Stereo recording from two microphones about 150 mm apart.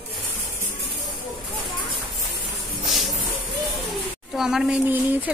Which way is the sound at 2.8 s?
Centre (ahead or behind).